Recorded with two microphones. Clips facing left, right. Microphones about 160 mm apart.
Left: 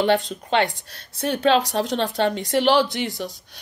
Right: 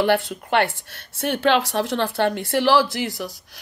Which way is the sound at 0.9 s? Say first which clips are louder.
Even; 75° right (ahead or behind).